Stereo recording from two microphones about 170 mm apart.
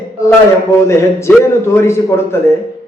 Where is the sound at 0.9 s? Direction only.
15° left (ahead or behind).